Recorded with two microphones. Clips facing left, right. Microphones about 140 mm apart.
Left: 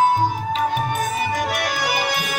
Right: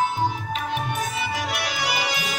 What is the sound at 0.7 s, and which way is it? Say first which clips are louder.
Music: left 4 dB; 45° left (ahead or behind).